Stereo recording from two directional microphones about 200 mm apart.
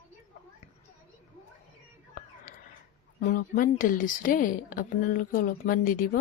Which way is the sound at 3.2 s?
40° left (ahead or behind).